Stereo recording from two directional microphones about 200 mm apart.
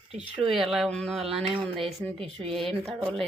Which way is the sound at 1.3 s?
30° right (ahead or behind).